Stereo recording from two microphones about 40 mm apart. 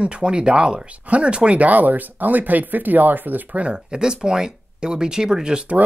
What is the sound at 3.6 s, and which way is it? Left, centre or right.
Speech, right.